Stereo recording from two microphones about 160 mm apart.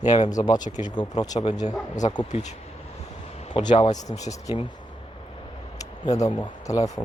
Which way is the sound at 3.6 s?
30° left (ahead or behind).